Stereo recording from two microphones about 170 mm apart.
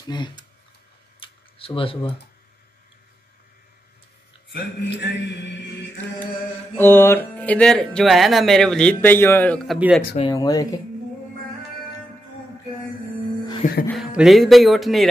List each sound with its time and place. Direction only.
0.1 s speech: 25° left (ahead or behind)
1.2 s a sound: 30° left (ahead or behind)
4.5 s speech: 90° left
6.8 s speech: 15° left (ahead or behind)
9.7 s music: 5° right (ahead or behind)
10.3 s speech: 20° left (ahead or behind)
13.6 s speech: 45° left (ahead or behind)
13.9 s music: centre (ahead or behind)